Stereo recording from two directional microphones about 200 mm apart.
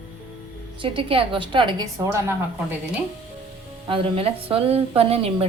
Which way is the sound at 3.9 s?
30° right (ahead or behind).